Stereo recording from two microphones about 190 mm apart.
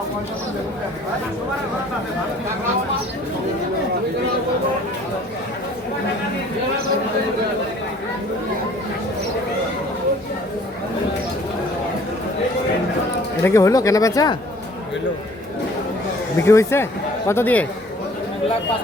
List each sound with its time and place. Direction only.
13.4 s speech: 15° left (ahead or behind)
16.4 s speech: 15° left (ahead or behind)